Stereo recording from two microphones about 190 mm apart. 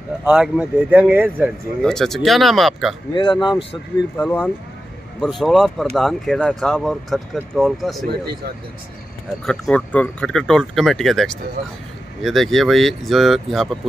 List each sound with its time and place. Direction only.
0.2 s speech: 5° right (ahead or behind)
1.8 s speech: 5° left (ahead or behind)
3.2 s speech: 25° left (ahead or behind)
4.2 s speech: 10° left (ahead or behind)
9.5 s speech: 5° left (ahead or behind)